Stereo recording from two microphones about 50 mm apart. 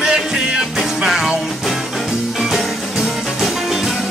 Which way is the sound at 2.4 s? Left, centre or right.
Centre.